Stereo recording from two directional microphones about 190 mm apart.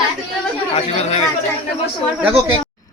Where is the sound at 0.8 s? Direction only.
35° left (ahead or behind).